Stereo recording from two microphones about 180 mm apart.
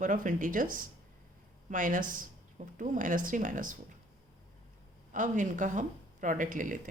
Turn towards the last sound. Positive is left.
turn(degrees=-45)  # may be behind; listen again after turning